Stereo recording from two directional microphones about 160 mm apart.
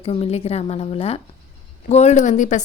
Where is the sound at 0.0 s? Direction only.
35° left (ahead or behind).